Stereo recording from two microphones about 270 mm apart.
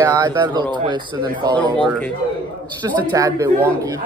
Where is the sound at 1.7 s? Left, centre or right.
Centre.